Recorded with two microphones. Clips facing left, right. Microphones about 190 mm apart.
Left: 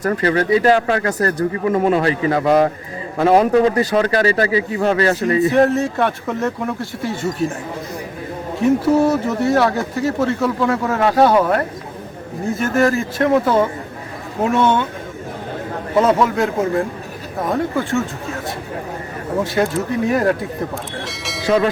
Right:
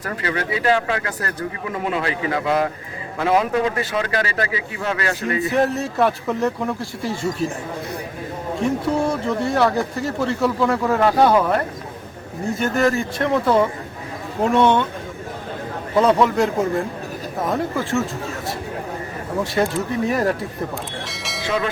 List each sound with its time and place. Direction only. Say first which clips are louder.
0.0 s speech: left 8 dB; 40° left (ahead or behind)
5.5 s speech: left 3 dB; centre (ahead or behind)
8.8 s speech: left 6 dB; 5° left (ahead or behind)
16.0 s speech: left 1 dB; centre (ahead or behind)
19.4 s speech: left 2 dB; centre (ahead or behind)
21.1 s train: left 3 dB; centre (ahead or behind)
21.4 s speech: left 7 dB; 40° left (ahead or behind)